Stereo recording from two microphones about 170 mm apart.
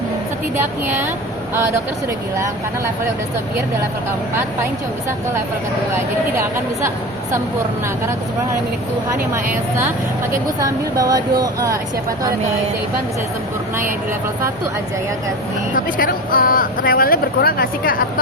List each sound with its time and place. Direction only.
0.5 s speech: 15° right (ahead or behind)
2.4 s speech: 15° right (ahead or behind)
9.3 s speech: 15° right (ahead or behind)
15.7 s speech: 55° left (ahead or behind)